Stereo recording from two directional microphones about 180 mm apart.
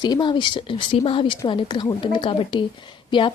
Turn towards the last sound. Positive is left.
turn(degrees=30)  # may be behind; listen again after turning